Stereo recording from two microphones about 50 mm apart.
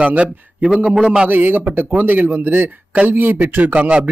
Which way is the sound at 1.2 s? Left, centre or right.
Right.